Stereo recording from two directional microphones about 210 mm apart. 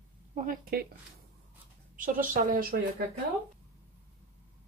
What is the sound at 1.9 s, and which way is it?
Speech, 40° right (ahead or behind).